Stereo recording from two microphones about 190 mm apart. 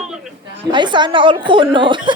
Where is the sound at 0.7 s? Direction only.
25° right (ahead or behind).